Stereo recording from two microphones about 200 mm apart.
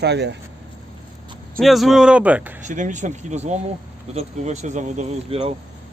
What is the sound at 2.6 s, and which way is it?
Speech, 40° right (ahead or behind).